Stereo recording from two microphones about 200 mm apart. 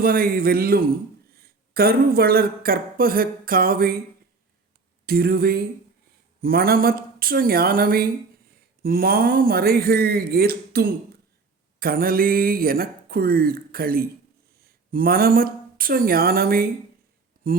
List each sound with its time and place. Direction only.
0.0 s speech: 45° right (ahead or behind)
5.0 s speech: 50° right (ahead or behind)